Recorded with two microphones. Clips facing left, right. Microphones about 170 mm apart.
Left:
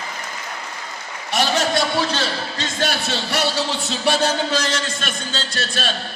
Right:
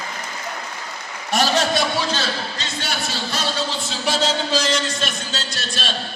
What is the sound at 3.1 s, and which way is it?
Speech, 70° left (ahead or behind).